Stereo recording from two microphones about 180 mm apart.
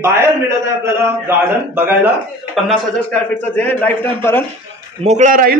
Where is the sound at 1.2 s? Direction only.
10° right (ahead or behind).